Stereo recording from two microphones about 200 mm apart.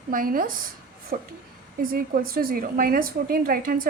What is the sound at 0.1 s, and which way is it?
A woman's voice, 45° right (ahead or behind).